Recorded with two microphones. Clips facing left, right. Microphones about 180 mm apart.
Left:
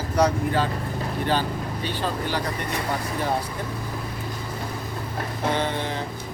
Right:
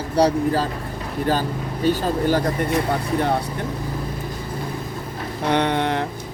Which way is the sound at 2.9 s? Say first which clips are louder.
Right 5 dB; 60° right (ahead or behind).